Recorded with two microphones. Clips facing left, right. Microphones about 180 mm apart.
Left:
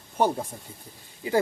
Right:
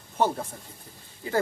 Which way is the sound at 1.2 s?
15° left (ahead or behind).